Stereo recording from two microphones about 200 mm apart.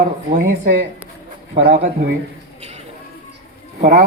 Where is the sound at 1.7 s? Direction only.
45° right (ahead or behind).